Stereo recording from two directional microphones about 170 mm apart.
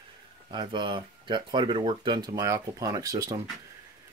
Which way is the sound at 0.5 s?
25° right (ahead or behind).